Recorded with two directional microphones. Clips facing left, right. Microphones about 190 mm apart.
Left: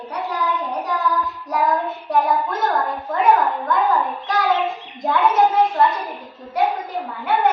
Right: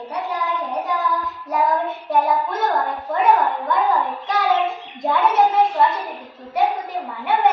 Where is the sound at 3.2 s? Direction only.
Centre (ahead or behind).